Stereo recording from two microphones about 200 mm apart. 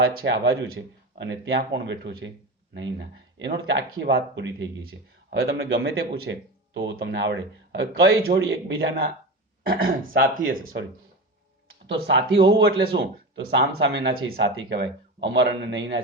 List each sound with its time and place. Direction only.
0.1 s speech: 55° right (ahead or behind)
9.6 s speech: 45° right (ahead or behind)
11.9 s speech: 60° right (ahead or behind)